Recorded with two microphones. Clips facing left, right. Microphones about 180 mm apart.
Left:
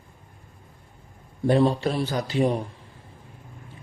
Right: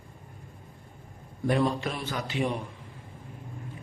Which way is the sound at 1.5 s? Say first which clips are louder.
Left 6 dB; 30° left (ahead or behind).